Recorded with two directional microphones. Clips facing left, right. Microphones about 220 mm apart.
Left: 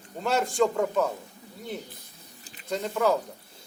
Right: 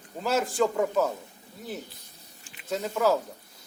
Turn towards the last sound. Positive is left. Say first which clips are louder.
# even
turn(degrees=-5)  # may be behind; listen again after turning